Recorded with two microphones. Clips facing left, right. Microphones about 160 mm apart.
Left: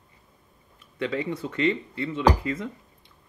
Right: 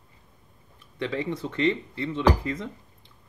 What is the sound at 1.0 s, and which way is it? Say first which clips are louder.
Speech: left 1 dB; 25° right (ahead or behind).